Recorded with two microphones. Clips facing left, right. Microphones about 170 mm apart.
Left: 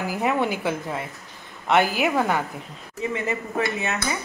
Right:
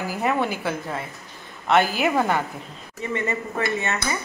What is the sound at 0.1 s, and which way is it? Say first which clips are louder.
Speech: even; 10° left (ahead or behind).